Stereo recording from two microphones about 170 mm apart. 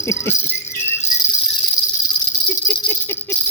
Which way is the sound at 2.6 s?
10° left (ahead or behind).